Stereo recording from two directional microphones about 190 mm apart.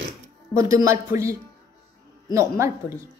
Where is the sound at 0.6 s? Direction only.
20° right (ahead or behind).